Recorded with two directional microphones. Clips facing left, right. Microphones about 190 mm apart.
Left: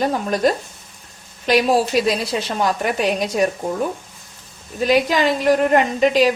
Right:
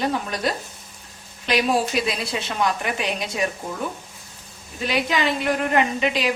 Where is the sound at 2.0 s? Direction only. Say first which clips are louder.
Left 6 dB; 40° left (ahead or behind).